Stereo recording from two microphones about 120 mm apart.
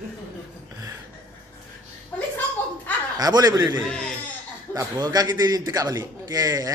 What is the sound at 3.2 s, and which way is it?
Speech, 35° right (ahead or behind).